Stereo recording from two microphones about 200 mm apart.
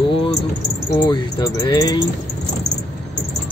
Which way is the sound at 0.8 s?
20° left (ahead or behind).